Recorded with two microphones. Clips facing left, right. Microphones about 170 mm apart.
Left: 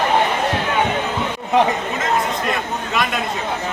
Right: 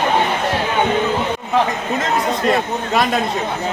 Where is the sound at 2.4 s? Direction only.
35° right (ahead or behind).